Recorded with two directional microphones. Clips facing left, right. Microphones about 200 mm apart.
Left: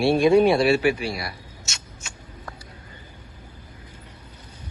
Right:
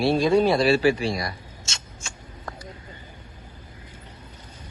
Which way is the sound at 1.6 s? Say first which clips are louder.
Right 1 dB; 25° right (ahead or behind).